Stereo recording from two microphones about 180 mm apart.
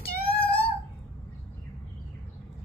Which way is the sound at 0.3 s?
60° left (ahead or behind).